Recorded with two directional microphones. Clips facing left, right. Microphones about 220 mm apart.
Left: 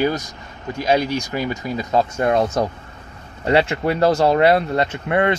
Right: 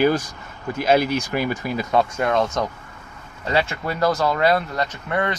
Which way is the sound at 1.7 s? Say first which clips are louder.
Left 2 dB; 20° left (ahead or behind).